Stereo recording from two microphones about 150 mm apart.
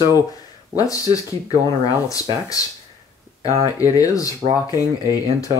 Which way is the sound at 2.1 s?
25° left (ahead or behind).